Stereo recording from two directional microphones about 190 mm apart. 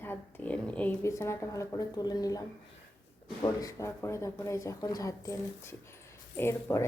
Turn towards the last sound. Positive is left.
turn(degrees=15)  # may be behind; listen again after turning